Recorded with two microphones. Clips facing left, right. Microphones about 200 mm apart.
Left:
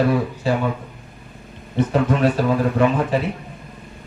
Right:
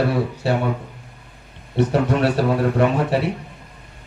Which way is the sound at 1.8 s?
70° right (ahead or behind).